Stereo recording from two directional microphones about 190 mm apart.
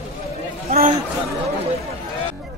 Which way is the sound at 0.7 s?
40° right (ahead or behind).